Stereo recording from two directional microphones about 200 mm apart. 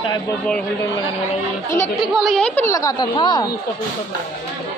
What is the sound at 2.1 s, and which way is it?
A woman's voice, centre (ahead or behind).